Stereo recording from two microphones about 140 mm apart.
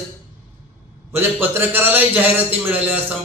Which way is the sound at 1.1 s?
15° right (ahead or behind).